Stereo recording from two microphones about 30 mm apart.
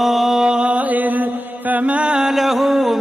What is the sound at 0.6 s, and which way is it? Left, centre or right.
Mantra, right.